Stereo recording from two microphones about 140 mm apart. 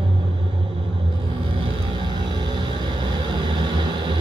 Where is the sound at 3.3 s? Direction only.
30° right (ahead or behind).